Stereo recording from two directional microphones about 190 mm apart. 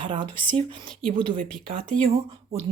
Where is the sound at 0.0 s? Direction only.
25° right (ahead or behind).